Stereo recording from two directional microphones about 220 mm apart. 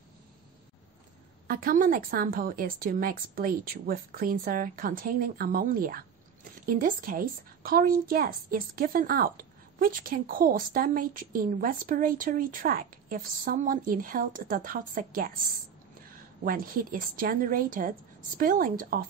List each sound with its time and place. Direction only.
1.5 s speech: 40° right (ahead or behind)
16.4 s speech: 40° right (ahead or behind)